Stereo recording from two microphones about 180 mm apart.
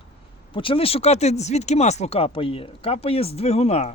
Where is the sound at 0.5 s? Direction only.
30° left (ahead or behind).